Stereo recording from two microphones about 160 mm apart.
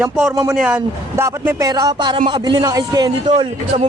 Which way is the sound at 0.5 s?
5° right (ahead or behind).